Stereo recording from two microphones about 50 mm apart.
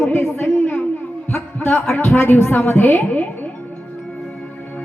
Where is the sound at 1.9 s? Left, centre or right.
Left.